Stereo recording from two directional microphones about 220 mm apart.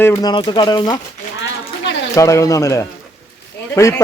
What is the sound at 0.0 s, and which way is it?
Speech, 15° left (ahead or behind).